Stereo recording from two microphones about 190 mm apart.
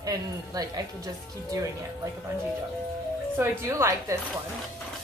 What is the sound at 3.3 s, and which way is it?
Speech, 15° right (ahead or behind).